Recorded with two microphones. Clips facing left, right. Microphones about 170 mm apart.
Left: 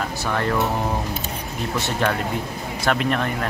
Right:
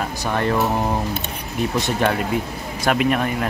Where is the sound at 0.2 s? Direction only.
20° right (ahead or behind).